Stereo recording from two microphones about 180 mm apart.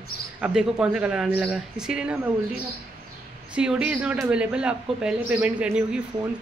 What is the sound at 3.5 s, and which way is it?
Speech, 5° right (ahead or behind).